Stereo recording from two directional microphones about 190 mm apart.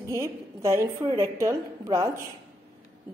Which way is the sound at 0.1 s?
15° right (ahead or behind).